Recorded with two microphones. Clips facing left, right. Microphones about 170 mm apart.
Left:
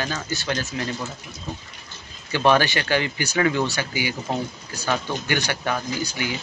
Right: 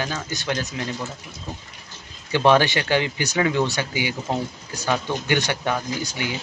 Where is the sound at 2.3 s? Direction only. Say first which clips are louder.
Right 2 dB; 20° right (ahead or behind).